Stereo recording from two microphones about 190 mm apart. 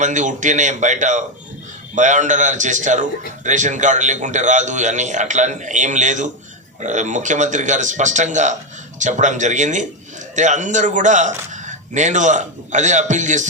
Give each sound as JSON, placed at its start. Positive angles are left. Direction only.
{"t": 0.0, "sound": "a man's voice", "side_deg": -40}